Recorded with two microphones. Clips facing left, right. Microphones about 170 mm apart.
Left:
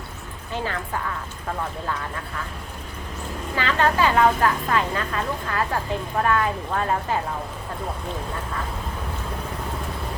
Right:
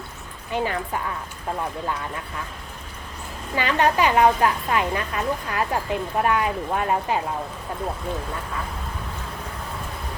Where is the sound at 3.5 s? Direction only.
15° right (ahead or behind).